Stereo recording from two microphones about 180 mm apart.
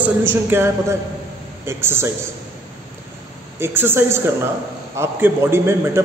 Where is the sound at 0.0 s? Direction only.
10° right (ahead or behind).